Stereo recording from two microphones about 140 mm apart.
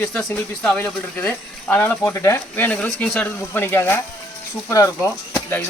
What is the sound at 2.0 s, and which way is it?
Speech, 20° left (ahead or behind).